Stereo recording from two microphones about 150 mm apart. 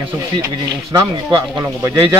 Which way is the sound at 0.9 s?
20° right (ahead or behind).